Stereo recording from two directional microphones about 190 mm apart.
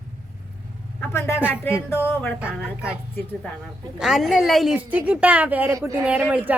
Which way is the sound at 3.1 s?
10° left (ahead or behind).